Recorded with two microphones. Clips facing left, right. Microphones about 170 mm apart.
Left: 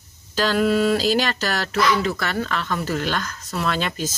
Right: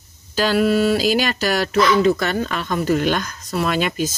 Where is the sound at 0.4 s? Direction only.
10° right (ahead or behind).